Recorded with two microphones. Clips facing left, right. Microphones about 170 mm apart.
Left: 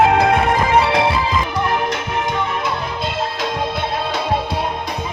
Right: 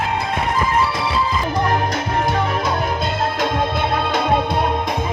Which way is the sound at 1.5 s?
35° right (ahead or behind).